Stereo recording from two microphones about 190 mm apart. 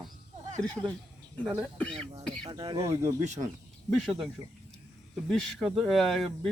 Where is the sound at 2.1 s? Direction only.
25° right (ahead or behind).